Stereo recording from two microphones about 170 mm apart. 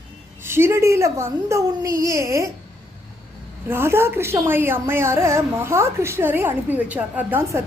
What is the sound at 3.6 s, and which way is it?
A woman's voice, 15° right (ahead or behind).